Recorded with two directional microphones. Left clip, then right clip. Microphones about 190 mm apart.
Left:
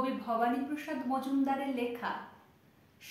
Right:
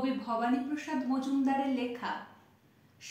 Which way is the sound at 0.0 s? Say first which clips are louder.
Left 1 dB; 10° left (ahead or behind).